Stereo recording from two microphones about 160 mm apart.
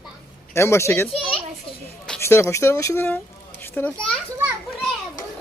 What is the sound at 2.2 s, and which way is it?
Speech, 15° left (ahead or behind).